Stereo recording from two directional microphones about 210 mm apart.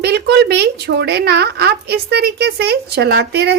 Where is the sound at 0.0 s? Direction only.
50° right (ahead or behind).